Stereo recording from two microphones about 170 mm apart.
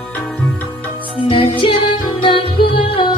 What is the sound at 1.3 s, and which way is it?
Music, 30° left (ahead or behind).